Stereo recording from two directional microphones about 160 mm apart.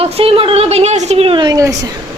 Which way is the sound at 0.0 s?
35° right (ahead or behind).